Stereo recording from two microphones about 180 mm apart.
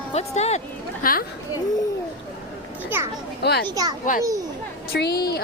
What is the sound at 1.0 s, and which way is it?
Speech, 50° left (ahead or behind).